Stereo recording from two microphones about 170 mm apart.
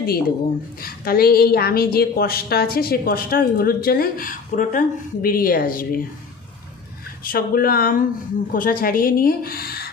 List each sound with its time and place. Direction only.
0.0 s a woman's voice: 65° left (ahead or behind)
7.3 s a woman's voice: 60° left (ahead or behind)